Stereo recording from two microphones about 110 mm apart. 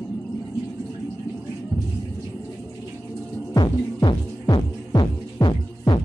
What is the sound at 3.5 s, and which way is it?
Throbbing, 40° left (ahead or behind).